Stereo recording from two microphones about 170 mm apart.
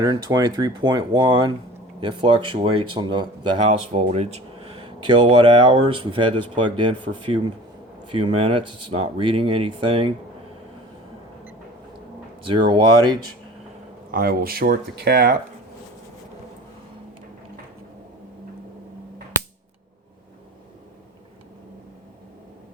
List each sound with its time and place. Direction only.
0.0 s speech: 25° right (ahead or behind)
12.5 s speech: 30° right (ahead or behind)
14.1 s speech: 60° right (ahead or behind)